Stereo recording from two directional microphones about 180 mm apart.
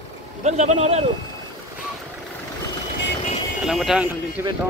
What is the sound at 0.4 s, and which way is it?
Speech, 40° right (ahead or behind).